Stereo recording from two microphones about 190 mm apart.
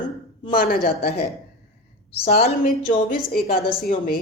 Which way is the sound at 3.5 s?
50° left (ahead or behind).